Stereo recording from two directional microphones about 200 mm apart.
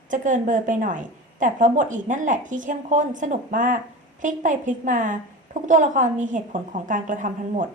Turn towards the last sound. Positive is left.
turn(degrees=-40)  # may be behind; listen again after turning